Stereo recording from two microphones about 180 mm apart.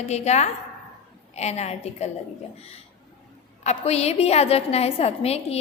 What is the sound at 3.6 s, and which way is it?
A woman's voice, 35° left (ahead or behind).